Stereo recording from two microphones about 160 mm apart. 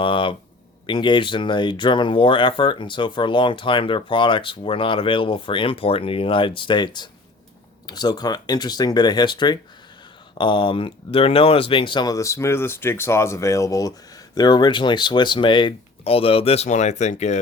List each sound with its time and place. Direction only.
0.0 s speech: 30° left (ahead or behind)